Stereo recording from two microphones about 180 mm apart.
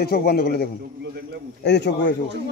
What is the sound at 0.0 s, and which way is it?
Speech, 60° left (ahead or behind).